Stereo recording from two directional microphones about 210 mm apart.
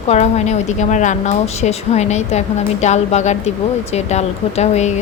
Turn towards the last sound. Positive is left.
turn(degrees=35)  # may be behind; listen again after turning